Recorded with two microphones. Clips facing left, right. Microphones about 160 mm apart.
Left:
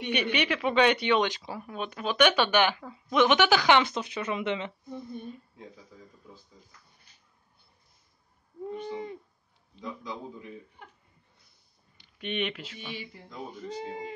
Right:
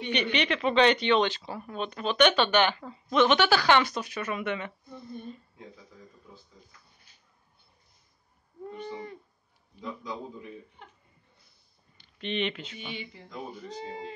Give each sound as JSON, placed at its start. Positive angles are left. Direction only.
{"t": 0.1, "sound": "speech", "side_deg": 5}
{"t": 8.6, "sound": "owl", "side_deg": 15}
{"t": 12.2, "sound": "speech", "side_deg": 5}